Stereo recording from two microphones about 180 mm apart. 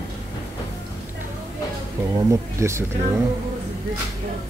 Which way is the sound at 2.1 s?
15° right (ahead or behind).